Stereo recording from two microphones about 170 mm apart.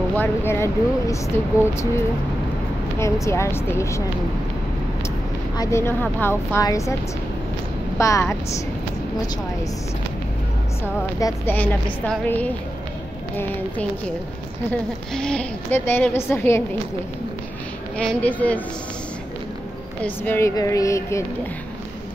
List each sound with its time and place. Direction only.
0.1 s a woman's voice: 10° left (ahead or behind)
3.0 s a woman's voice: 15° left (ahead or behind)
5.6 s a woman's voice: 15° left (ahead or behind)
8.0 s a woman's voice: 15° left (ahead or behind)
11.1 s speech: 20° left (ahead or behind)
11.5 s a woman's voice: 10° left (ahead or behind)
17.9 s a woman's voice: 10° left (ahead or behind)
20.0 s a woman's voice: 15° left (ahead or behind)